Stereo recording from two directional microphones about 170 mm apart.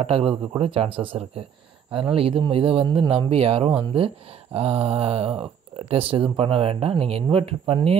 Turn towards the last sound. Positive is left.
turn(degrees=-35)  # may be behind; listen again after turning